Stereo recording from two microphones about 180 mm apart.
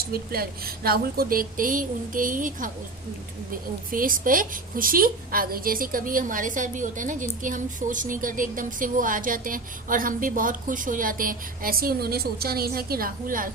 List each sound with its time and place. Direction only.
0.1 s a woman's voice: 55° right (ahead or behind)